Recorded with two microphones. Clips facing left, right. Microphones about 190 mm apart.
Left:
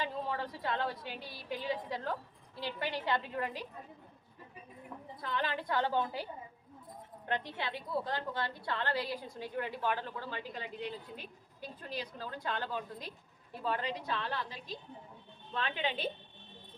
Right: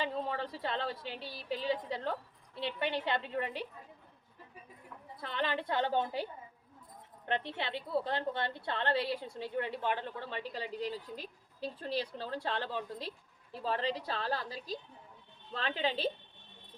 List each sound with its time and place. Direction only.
0.0 s a woman's voice: 25° right (ahead or behind)
5.2 s a woman's voice: 25° right (ahead or behind)
7.3 s a woman's voice: 25° right (ahead or behind)